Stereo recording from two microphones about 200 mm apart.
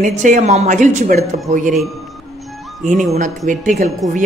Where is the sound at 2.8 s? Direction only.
40° right (ahead or behind).